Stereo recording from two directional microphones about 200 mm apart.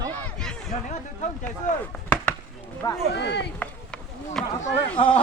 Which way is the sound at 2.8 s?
15° left (ahead or behind).